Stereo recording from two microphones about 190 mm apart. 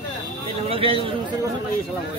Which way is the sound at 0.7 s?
30° right (ahead or behind).